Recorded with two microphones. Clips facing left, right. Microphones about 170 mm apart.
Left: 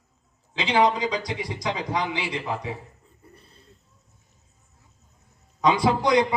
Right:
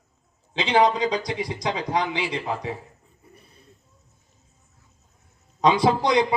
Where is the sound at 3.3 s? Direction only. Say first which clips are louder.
Right 1 dB; 15° right (ahead or behind).